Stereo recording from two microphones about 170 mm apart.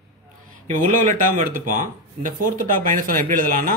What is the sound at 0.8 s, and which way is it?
A man's voice, 55° right (ahead or behind).